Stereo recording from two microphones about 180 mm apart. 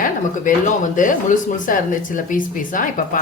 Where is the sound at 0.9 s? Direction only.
45° left (ahead or behind).